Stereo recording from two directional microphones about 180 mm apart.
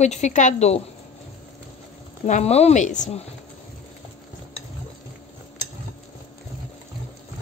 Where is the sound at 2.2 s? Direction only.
40° left (ahead or behind).